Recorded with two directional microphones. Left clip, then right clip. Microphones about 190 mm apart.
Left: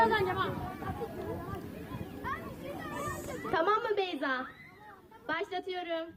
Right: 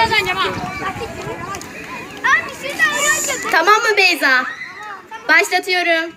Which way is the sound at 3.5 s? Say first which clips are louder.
Right 16 dB; 10° left (ahead or behind).